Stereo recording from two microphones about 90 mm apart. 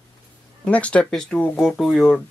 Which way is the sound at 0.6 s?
15° left (ahead or behind).